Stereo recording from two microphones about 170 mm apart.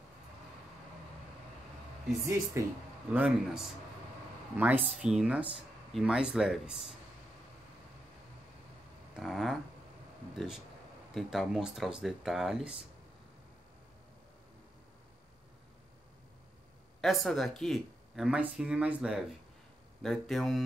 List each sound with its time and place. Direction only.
2.6 s speech: 15° right (ahead or behind)
3.1 s speech: 5° right (ahead or behind)
9.2 s speech: centre (ahead or behind)
17.0 s speech: centre (ahead or behind)